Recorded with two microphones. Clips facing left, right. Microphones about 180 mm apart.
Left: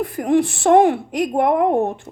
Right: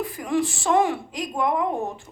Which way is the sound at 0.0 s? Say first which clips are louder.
Left 7 dB; 60° left (ahead or behind).